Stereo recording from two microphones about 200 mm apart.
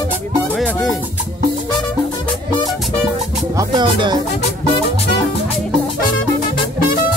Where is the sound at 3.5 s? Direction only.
25° right (ahead or behind).